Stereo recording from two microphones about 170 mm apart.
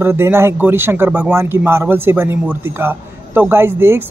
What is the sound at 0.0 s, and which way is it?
Speech, 15° right (ahead or behind).